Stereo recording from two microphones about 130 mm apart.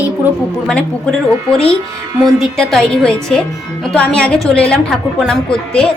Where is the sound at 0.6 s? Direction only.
5° left (ahead or behind).